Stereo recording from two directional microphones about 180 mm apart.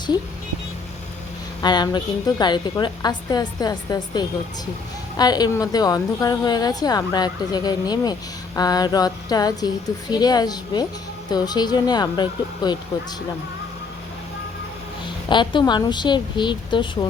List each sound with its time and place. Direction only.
1.6 s a woman's voice: 25° left (ahead or behind)
15.3 s a woman's voice: 25° left (ahead or behind)